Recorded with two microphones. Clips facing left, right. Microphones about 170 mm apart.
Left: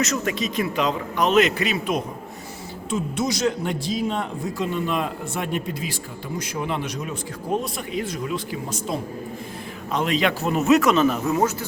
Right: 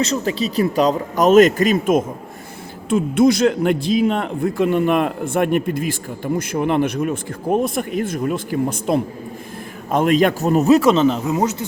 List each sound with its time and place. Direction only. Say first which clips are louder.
0.0 s speech: right 4 dB; 30° right (ahead or behind)